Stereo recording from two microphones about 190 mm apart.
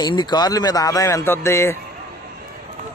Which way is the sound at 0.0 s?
20° left (ahead or behind).